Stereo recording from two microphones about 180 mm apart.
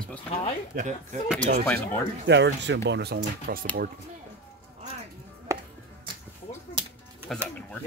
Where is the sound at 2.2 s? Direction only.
75° right (ahead or behind).